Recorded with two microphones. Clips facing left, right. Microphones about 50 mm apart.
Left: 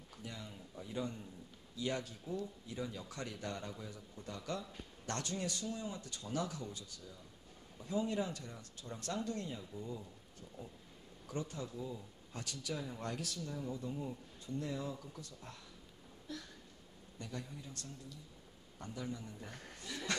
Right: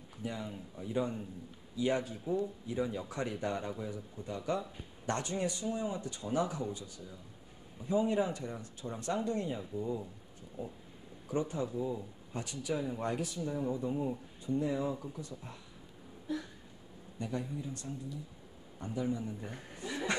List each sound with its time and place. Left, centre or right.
0.2 s speech: centre